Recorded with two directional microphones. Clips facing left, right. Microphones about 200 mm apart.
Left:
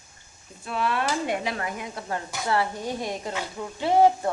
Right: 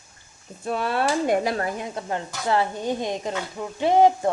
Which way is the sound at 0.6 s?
40° right (ahead or behind).